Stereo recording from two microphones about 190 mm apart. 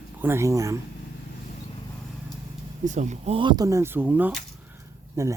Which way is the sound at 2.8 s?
40° right (ahead or behind).